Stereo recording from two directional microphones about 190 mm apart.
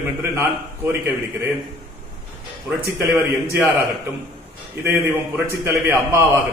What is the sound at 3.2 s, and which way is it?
Speech, 15° right (ahead or behind).